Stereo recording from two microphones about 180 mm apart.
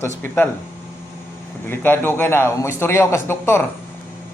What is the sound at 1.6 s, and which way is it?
A child's voice, 10° left (ahead or behind).